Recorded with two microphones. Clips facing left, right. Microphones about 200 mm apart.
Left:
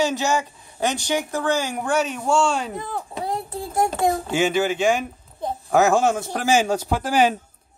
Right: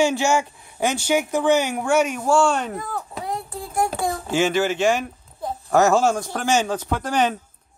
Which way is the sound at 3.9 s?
20° left (ahead or behind).